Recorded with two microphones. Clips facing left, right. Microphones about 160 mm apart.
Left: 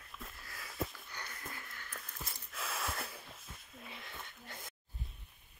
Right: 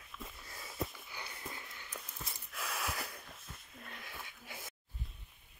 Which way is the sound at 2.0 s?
Centre (ahead or behind).